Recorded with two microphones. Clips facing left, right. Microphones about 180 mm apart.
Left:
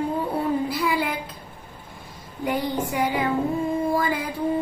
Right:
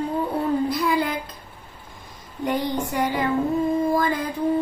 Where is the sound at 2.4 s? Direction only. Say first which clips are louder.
Right 1 dB; 10° left (ahead or behind).